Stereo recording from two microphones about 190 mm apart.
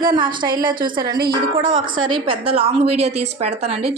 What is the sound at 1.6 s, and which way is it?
Speech, 90° right.